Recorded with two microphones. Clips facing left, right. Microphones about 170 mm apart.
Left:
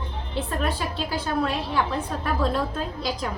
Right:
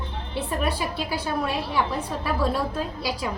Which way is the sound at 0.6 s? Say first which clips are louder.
Right 1 dB; 10° right (ahead or behind).